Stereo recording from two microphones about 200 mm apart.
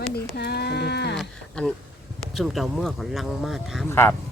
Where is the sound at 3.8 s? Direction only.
10° left (ahead or behind).